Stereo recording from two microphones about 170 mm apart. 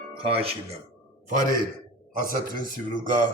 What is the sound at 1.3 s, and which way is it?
A man's voice, 50° right (ahead or behind).